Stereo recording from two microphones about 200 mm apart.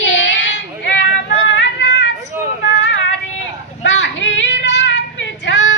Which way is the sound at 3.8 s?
65° left (ahead or behind).